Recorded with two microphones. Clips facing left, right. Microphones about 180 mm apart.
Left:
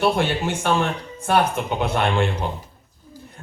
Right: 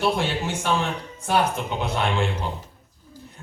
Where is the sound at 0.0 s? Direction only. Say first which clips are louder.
Left 3 dB; 60° left (ahead or behind).